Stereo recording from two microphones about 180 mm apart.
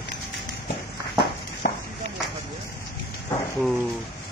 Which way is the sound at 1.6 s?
55° left (ahead or behind).